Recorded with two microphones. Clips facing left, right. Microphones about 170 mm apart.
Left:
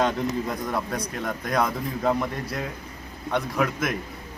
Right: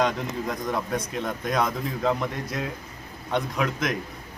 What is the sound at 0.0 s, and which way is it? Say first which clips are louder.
A man's voice: left 1 dB; 5° left (ahead or behind).